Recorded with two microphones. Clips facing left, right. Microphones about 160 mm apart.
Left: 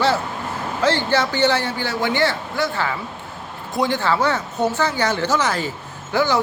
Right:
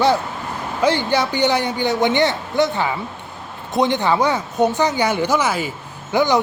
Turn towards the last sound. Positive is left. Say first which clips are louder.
# right 3 dB
turn(degrees=-15)  # may be behind; listen again after turning